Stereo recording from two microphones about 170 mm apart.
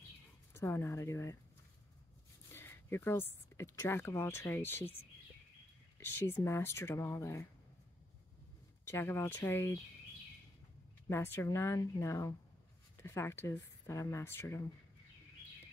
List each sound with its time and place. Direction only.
0.5 s speech: 15° left (ahead or behind)
2.5 s speech: 15° left (ahead or behind)
5.9 s speech: 15° left (ahead or behind)
8.8 s speech: 15° left (ahead or behind)
11.1 s speech: 15° left (ahead or behind)